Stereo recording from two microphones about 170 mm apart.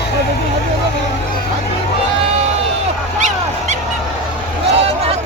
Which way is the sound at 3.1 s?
45° right (ahead or behind).